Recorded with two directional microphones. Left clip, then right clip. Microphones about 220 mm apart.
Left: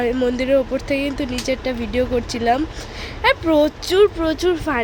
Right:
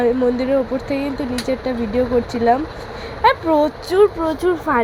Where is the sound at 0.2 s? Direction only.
10° left (ahead or behind).